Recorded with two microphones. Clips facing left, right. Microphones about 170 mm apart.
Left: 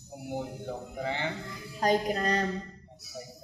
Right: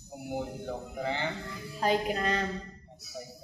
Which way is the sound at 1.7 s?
40° left (ahead or behind).